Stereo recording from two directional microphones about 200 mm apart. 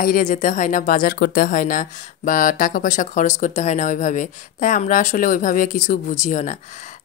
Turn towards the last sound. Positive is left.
turn(degrees=35)  # may be behind; listen again after turning